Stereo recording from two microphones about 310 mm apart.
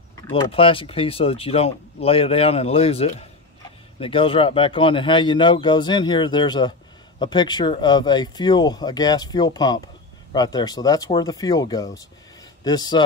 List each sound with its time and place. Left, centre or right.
0.3 s speech: centre